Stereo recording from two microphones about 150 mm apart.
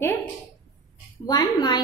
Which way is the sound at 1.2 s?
25° left (ahead or behind).